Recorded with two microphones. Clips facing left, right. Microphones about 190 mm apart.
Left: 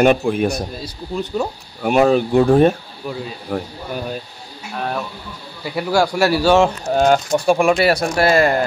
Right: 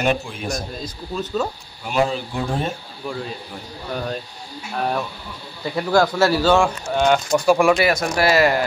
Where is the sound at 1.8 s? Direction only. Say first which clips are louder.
Left 7 dB; 60° left (ahead or behind).